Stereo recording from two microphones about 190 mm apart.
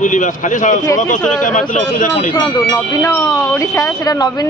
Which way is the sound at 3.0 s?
15° left (ahead or behind).